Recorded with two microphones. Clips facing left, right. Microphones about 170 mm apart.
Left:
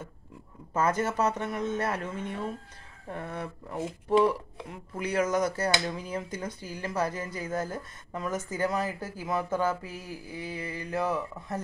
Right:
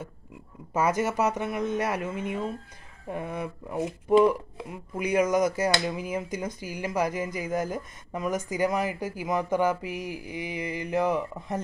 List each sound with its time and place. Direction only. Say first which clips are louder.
0.7 s speech: right 2 dB; 10° right (ahead or behind)